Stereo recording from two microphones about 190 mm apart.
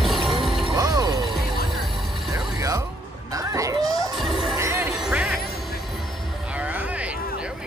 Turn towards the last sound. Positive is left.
turn(degrees=-5)  # may be behind; listen again after turning